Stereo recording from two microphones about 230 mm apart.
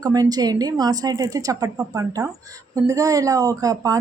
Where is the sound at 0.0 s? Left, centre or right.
Centre.